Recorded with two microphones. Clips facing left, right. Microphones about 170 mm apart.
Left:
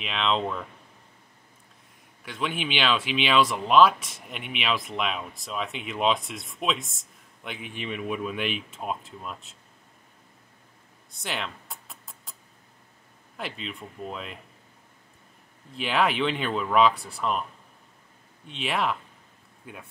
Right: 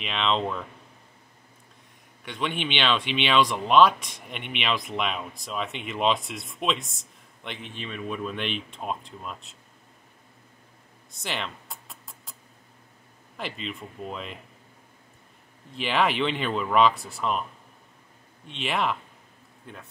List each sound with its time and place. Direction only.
0.0 s speech: centre (ahead or behind)
2.2 s speech: centre (ahead or behind)
11.1 s a sound: centre (ahead or behind)
13.4 s speech: centre (ahead or behind)
15.7 s speech: centre (ahead or behind)
18.5 s speech: centre (ahead or behind)